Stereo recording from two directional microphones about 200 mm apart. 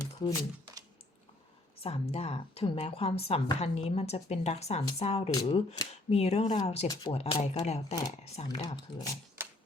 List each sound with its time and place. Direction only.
0.0 s a sound: 15° left (ahead or behind)
1.8 s a woman's voice: 30° left (ahead or behind)
6.8 s speech: 15° left (ahead or behind)
7.1 s a woman's voice: 30° left (ahead or behind)
8.6 s a woman's voice: 20° left (ahead or behind)
9.4 s music: 10° right (ahead or behind)